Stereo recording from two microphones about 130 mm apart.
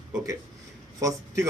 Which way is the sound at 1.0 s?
25° right (ahead or behind).